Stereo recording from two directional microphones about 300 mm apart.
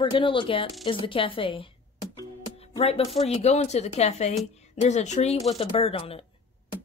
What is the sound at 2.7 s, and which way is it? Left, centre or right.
Speech, centre.